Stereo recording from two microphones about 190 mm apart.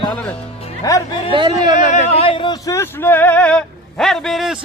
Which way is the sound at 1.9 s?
35° left (ahead or behind).